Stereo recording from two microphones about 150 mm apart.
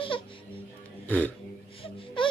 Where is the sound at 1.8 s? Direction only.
35° left (ahead or behind).